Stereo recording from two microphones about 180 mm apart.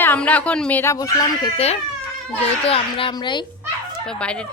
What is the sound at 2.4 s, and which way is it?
A child's voice, 30° left (ahead or behind).